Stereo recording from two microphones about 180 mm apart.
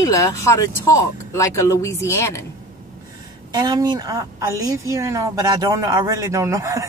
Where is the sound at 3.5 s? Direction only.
20° right (ahead or behind).